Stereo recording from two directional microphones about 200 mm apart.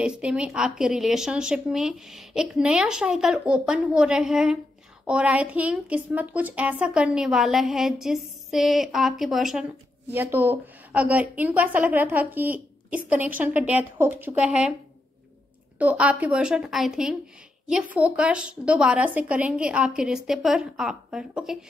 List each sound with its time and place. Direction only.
0.0 s a woman's voice: 5° right (ahead or behind)
15.8 s a woman's voice: 5° right (ahead or behind)